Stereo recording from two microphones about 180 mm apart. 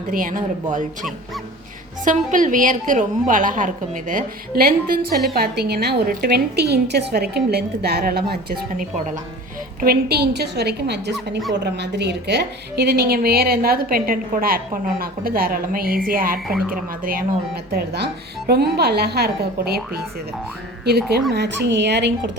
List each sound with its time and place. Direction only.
0.1 s a woman's voice: 50° right (ahead or behind)
2.0 s a woman's voice: 45° right (ahead or behind)
17.7 s a woman's voice: 60° right (ahead or behind)
21.3 s speech: 70° right (ahead or behind)